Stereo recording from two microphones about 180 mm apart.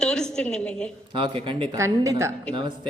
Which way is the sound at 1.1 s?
30° right (ahead or behind).